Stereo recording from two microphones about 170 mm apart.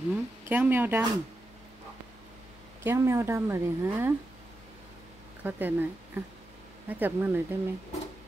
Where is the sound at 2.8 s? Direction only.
15° right (ahead or behind).